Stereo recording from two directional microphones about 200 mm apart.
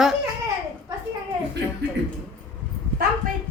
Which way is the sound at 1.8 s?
60° right (ahead or behind).